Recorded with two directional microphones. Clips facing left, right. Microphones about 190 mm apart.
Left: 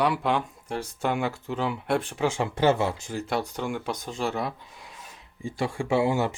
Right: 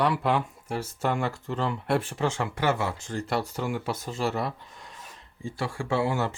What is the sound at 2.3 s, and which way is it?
Speech, 15° left (ahead or behind).